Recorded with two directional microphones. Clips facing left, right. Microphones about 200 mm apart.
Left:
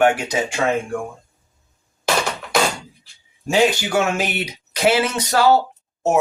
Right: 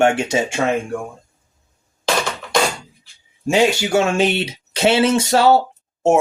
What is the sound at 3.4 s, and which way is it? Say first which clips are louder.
Speech: right 1 dB; 25° right (ahead or behind).